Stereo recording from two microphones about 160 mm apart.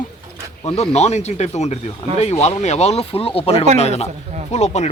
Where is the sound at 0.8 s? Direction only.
45° left (ahead or behind).